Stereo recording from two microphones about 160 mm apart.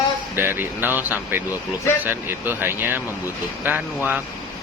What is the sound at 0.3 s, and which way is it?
Speech, 10° right (ahead or behind).